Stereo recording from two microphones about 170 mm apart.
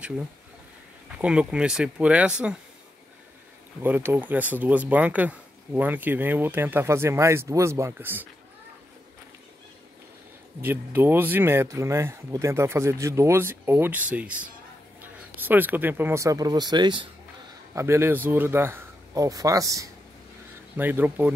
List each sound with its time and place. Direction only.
1.1 s speech: 5° right (ahead or behind)
3.8 s speech: 10° right (ahead or behind)
10.6 s speech: 10° right (ahead or behind)
17.7 s speech: 15° right (ahead or behind)